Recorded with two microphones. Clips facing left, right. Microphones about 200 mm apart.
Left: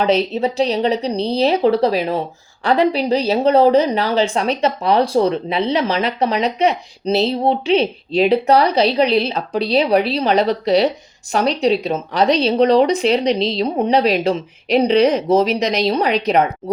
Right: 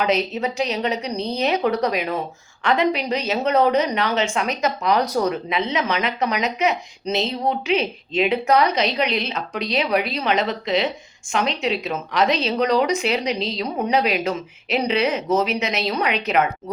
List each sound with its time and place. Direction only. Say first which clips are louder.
0.0 s a woman's voice: left 5 dB; 30° left (ahead or behind)